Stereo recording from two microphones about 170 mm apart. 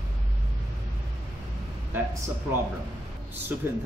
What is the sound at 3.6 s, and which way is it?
Speech, 15° right (ahead or behind).